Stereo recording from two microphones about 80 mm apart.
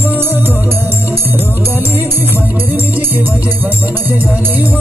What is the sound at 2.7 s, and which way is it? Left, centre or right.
Music, right.